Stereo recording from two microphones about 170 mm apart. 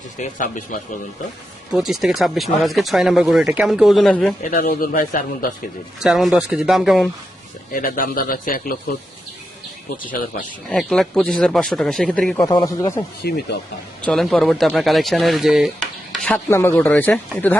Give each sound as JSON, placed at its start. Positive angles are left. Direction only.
{"t": 0.2, "sound": "speech", "side_deg": 50}
{"t": 1.7, "sound": "speech", "side_deg": 0}
{"t": 4.7, "sound": "a man's voice", "side_deg": 55}
{"t": 6.0, "sound": "speech", "side_deg": 0}
{"t": 7.7, "sound": "a man's voice", "side_deg": 55}
{"t": 10.7, "sound": "speech", "side_deg": 0}
{"t": 12.4, "sound": "speech", "side_deg": 20}
{"t": 13.2, "sound": "a man's voice", "side_deg": 65}
{"t": 14.0, "sound": "speech", "side_deg": 0}
{"t": 16.5, "sound": "speech", "side_deg": 15}